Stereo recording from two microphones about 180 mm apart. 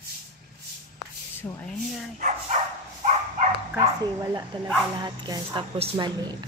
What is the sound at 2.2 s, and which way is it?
Dog, 40° right (ahead or behind).